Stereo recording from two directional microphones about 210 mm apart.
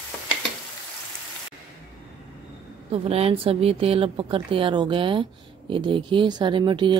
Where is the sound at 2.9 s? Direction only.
30° right (ahead or behind).